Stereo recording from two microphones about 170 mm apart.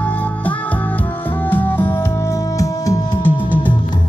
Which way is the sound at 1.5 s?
10° left (ahead or behind).